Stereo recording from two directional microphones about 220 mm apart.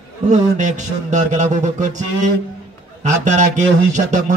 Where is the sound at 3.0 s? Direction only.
35° right (ahead or behind).